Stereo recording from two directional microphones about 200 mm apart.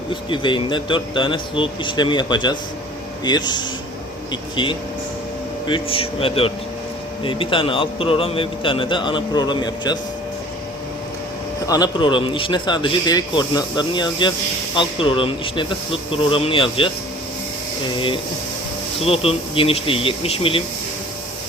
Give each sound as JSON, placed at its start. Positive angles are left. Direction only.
{"t": 0.1, "sound": "speech", "side_deg": 25}
{"t": 11.6, "sound": "speech", "side_deg": 20}
{"t": 19.0, "sound": "speech", "side_deg": 30}